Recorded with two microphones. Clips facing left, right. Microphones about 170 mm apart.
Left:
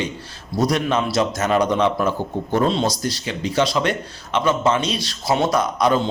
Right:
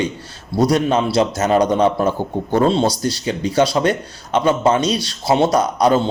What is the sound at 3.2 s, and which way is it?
A man's voice, 35° right (ahead or behind).